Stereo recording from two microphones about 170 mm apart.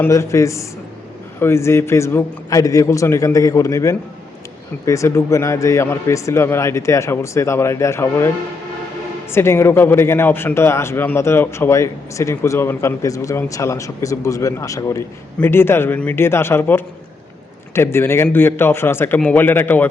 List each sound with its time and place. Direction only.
0.0 s speech: 15° left (ahead or behind)
9.3 s speech: 15° left (ahead or behind)